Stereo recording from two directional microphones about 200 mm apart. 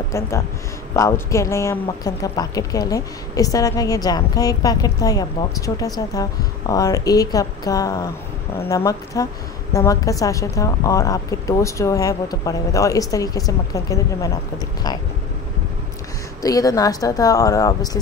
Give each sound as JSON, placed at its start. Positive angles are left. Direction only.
{"t": 0.1, "sound": "a woman's voice", "side_deg": 15}
{"t": 16.4, "sound": "a woman's voice", "side_deg": 15}